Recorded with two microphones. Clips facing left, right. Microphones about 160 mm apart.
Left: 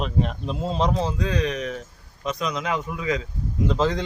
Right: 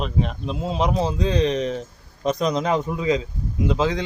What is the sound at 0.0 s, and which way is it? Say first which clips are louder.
Speech: even; centre (ahead or behind).